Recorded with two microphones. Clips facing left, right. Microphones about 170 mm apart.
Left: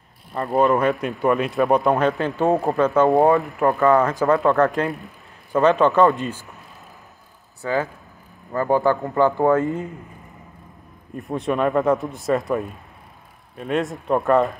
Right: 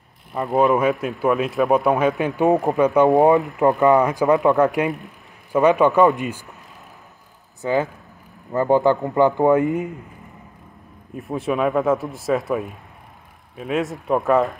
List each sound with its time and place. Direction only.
0.3 s speech: 10° right (ahead or behind)
7.6 s speech: 20° right (ahead or behind)
11.1 s speech: centre (ahead or behind)